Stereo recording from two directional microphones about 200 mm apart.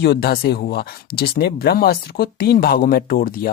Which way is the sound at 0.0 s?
55° left (ahead or behind).